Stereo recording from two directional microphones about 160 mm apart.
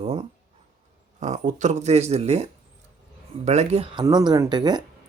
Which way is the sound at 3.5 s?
40° right (ahead or behind).